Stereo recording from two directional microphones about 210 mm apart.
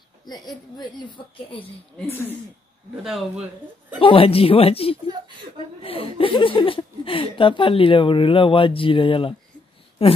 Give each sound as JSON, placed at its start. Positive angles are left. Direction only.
{"t": 0.3, "sound": "speech", "side_deg": 20}
{"t": 2.0, "sound": "speech", "side_deg": 10}
{"t": 3.0, "sound": "speech", "side_deg": 0}
{"t": 4.0, "sound": "speech", "side_deg": 25}